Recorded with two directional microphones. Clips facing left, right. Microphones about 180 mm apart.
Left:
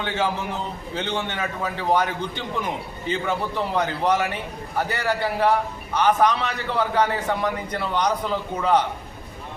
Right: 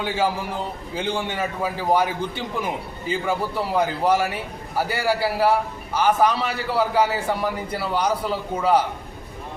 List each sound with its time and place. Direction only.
0.0 s a man's voice: 10° right (ahead or behind)